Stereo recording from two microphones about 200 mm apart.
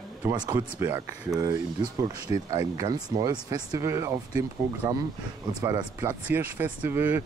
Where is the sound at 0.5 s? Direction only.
15° right (ahead or behind).